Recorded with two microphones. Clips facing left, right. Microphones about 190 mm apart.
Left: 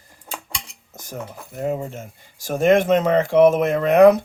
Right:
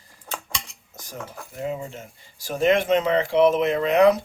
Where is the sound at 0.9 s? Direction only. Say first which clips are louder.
Left 5 dB; 50° left (ahead or behind).